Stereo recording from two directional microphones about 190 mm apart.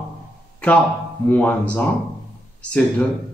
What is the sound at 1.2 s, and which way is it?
Speech, 10° left (ahead or behind).